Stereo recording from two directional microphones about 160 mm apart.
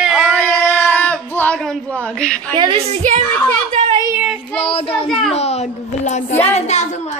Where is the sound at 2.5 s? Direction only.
30° right (ahead or behind).